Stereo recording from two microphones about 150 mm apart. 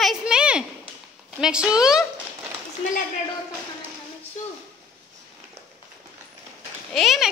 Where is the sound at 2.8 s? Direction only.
50° left (ahead or behind).